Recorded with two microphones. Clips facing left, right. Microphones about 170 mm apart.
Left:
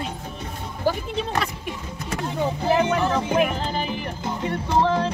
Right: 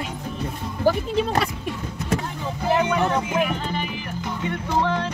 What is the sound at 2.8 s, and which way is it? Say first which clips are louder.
Music: even; 30° left (ahead or behind).